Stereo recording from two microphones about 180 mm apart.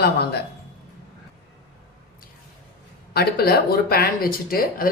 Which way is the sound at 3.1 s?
60° left (ahead or behind).